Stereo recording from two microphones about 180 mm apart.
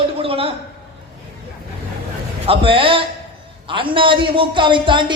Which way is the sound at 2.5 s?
30° right (ahead or behind).